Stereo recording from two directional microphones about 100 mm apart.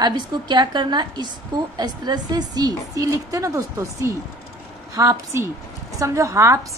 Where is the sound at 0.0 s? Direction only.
45° right (ahead or behind).